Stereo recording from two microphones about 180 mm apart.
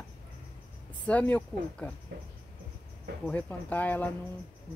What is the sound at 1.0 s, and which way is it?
Speech, 5° left (ahead or behind).